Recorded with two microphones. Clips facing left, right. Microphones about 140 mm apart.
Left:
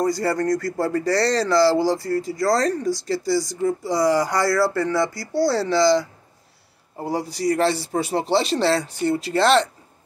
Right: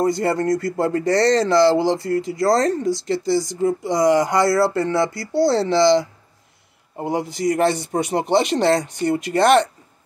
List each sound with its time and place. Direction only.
0.0 s speech: 25° right (ahead or behind)